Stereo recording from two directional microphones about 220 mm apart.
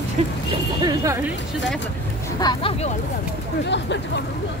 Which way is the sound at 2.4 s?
20° left (ahead or behind).